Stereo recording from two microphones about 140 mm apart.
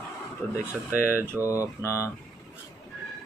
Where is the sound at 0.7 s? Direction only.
15° right (ahead or behind).